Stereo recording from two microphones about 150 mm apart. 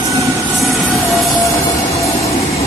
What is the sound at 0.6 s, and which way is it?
Vehicle, centre (ahead or behind).